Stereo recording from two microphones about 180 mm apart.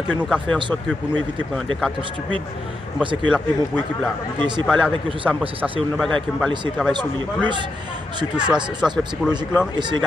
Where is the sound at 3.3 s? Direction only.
5° right (ahead or behind).